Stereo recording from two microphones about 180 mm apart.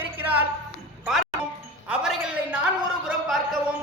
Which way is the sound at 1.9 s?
5° right (ahead or behind).